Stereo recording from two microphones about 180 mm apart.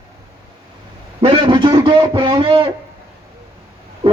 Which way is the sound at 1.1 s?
25° right (ahead or behind).